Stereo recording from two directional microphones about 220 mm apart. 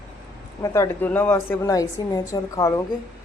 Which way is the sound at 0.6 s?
10° left (ahead or behind).